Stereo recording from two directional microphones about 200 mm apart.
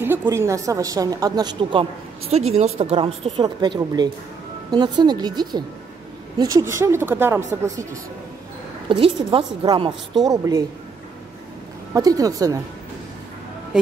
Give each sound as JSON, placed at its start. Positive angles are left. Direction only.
{"t": 0.0, "sound": "a woman's voice", "side_deg": -10}
{"t": 8.8, "sound": "a woman's voice", "side_deg": -25}
{"t": 11.9, "sound": "a woman's voice", "side_deg": -15}